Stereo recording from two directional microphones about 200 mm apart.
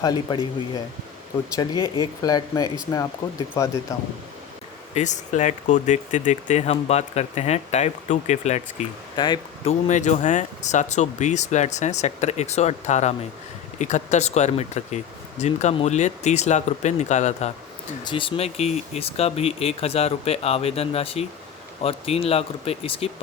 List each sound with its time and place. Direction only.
0.0 s speech: 20° left (ahead or behind)
1.5 s speech: 20° left (ahead or behind)
4.9 s speech: 35° left (ahead or behind)
9.1 s speech: 20° left (ahead or behind)
18.0 s speech: 25° left (ahead or behind)